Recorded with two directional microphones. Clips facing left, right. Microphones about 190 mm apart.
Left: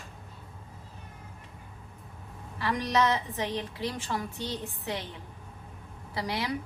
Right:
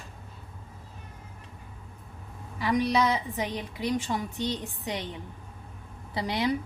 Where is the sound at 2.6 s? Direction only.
15° right (ahead or behind).